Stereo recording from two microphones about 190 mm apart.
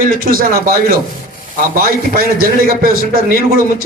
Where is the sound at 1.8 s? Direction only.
50° right (ahead or behind).